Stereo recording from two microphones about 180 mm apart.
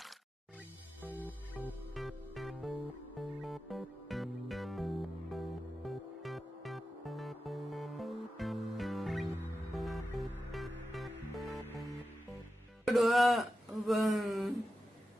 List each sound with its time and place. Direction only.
1.0 s music: 10° right (ahead or behind)
11.5 s music: 15° left (ahead or behind)
12.8 s a sound: centre (ahead or behind)